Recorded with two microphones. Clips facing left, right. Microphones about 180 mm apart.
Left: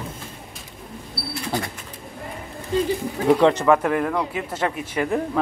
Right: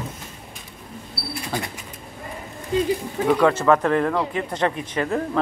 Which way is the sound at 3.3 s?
20° left (ahead or behind).